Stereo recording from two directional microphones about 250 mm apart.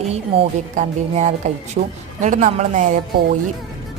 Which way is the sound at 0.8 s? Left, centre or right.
Right.